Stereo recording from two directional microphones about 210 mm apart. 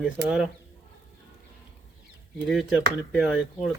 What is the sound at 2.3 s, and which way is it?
A man's voice, centre (ahead or behind).